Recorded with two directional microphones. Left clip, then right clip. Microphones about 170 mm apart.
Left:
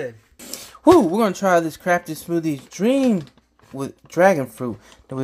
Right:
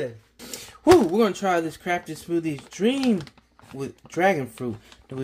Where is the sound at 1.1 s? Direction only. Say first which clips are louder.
Left 4 dB; 25° left (ahead or behind).